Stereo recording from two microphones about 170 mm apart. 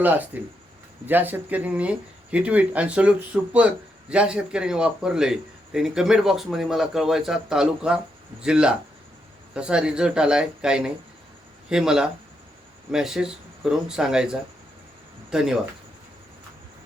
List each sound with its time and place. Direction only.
0.3 s a man's voice: 10° right (ahead or behind)